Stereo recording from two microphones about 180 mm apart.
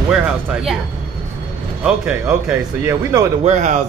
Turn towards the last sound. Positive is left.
turn(degrees=-40)  # may be behind; listen again after turning